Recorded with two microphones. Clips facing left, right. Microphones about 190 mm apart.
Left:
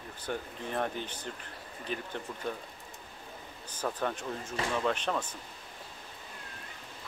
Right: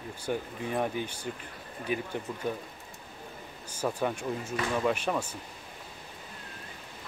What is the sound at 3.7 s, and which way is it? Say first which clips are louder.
Speech: right 3 dB; 10° right (ahead or behind).